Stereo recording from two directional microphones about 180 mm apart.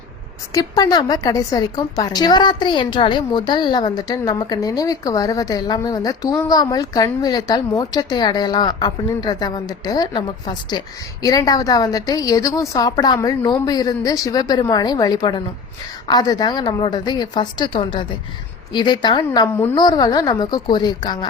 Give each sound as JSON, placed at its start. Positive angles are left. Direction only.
{"t": 0.5, "sound": "a woman's voice", "side_deg": 20}